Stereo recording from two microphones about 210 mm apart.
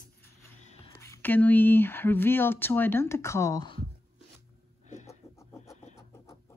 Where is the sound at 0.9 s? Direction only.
15° left (ahead or behind).